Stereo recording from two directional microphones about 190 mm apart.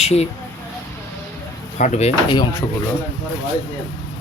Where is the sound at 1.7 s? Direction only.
40° left (ahead or behind).